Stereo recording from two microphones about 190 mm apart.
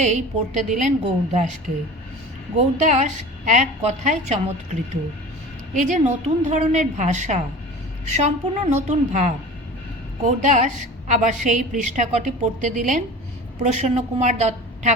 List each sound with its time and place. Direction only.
0.0 s a woman's voice: 40° right (ahead or behind)
2.8 s a woman's voice: 40° right (ahead or behind)